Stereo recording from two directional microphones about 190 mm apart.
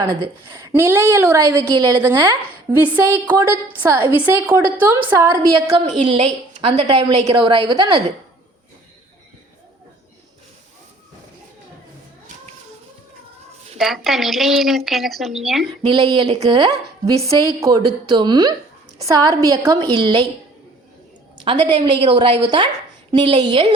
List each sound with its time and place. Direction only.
0.5 s a woman's voice: 15° right (ahead or behind)
5.7 s a woman's voice: 35° right (ahead or behind)
13.7 s a woman's voice: centre (ahead or behind)
15.9 s a woman's voice: 25° right (ahead or behind)
21.4 s a woman's voice: 25° right (ahead or behind)